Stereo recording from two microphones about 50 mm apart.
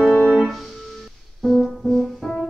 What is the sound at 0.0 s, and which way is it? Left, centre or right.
Music, centre.